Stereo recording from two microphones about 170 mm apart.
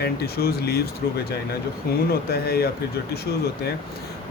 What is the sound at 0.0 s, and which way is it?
Speech, 70° left (ahead or behind).